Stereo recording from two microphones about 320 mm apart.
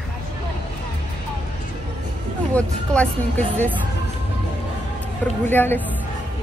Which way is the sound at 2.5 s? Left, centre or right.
Centre.